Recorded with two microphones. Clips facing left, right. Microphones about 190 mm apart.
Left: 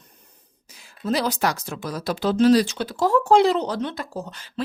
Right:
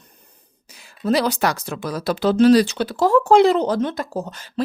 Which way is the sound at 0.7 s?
70° right (ahead or behind).